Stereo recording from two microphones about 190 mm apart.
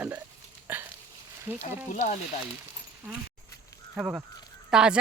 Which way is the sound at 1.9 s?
40° left (ahead or behind).